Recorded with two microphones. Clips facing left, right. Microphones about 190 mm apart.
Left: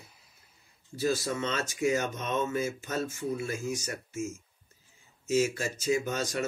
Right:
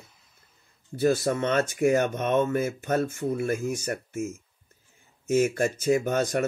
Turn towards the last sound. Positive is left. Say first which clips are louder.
# right 6 dB
turn(degrees=-55)  # may be behind; listen again after turning